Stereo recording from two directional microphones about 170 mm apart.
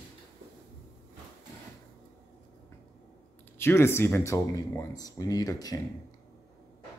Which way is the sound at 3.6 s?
15° left (ahead or behind).